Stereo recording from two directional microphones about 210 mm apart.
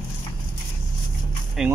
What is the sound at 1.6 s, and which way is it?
Speech, centre (ahead or behind).